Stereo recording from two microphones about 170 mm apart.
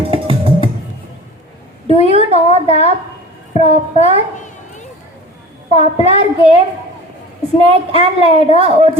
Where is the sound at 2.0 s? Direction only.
35° right (ahead or behind).